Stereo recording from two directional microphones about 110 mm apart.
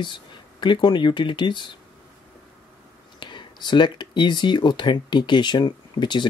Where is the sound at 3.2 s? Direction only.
45° left (ahead or behind).